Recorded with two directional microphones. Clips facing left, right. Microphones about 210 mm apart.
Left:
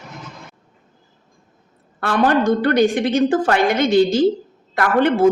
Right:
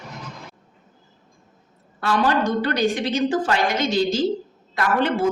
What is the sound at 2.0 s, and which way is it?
A woman's voice, 55° left (ahead or behind).